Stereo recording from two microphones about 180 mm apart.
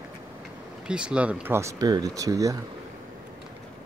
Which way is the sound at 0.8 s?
5° right (ahead or behind).